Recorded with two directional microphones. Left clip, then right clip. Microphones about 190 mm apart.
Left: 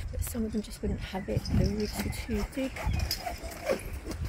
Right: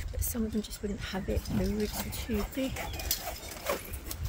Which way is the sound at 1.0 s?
Centre (ahead or behind).